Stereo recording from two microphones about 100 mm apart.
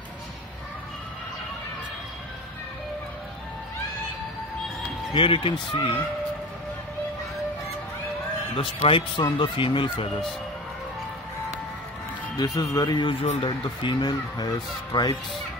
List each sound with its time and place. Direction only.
5.1 s speech: 60° left (ahead or behind)
8.5 s speech: 60° left (ahead or behind)
12.5 s speech: 35° left (ahead or behind)
12.9 s speech: 60° left (ahead or behind); by 15.1 s 45° left (ahead or behind)